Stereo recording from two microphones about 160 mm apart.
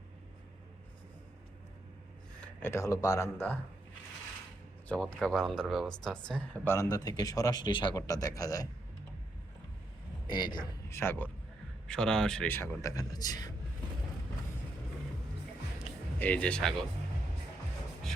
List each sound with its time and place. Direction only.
2.4 s speech: 15° left (ahead or behind)
4.9 s speech: 5° left (ahead or behind)
6.7 s speech: 25° left (ahead or behind)
10.2 s speech: 30° left (ahead or behind)
10.8 s speech: 15° left (ahead or behind)
16.1 s speech: 10° left (ahead or behind)